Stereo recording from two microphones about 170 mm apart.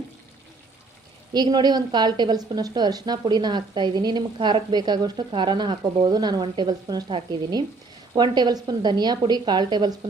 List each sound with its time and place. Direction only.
1.3 s a woman's voice: 25° right (ahead or behind)